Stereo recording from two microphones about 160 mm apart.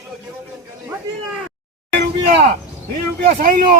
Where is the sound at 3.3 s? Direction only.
60° right (ahead or behind).